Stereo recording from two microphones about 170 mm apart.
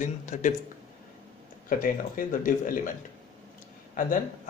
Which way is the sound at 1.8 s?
55° left (ahead or behind).